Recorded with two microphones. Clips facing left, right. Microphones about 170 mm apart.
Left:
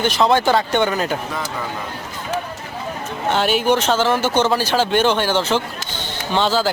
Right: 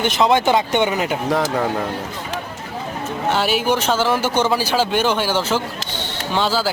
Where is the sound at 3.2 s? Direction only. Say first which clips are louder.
Left 2 dB; 5° right (ahead or behind).